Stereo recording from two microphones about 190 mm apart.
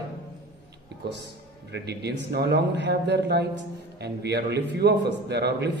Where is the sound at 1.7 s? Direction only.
60° right (ahead or behind).